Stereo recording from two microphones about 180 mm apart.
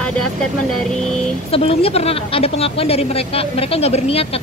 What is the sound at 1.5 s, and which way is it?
A woman's voice, 30° left (ahead or behind).